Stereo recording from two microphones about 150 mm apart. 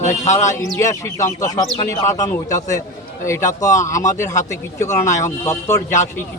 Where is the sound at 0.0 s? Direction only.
50° left (ahead or behind).